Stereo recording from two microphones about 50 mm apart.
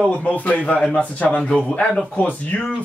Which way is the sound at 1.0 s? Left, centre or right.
Left.